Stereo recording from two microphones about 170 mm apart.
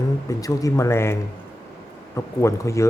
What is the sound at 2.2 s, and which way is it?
Speech, 15° left (ahead or behind).